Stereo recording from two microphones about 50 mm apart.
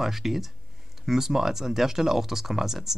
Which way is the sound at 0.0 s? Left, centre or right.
Centre.